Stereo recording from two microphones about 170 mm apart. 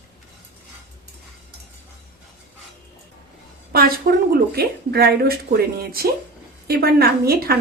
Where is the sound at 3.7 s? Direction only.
60° right (ahead or behind).